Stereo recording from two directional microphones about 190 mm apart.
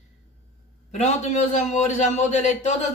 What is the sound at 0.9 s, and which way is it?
A man's voice, 35° left (ahead or behind).